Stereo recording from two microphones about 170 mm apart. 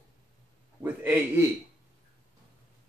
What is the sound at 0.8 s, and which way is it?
Speech, 10° right (ahead or behind).